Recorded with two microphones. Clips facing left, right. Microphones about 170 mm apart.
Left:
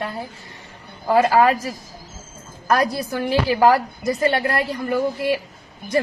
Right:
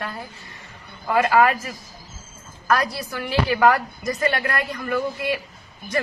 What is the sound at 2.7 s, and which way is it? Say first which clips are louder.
Speech: left 3 dB; 40° left (ahead or behind).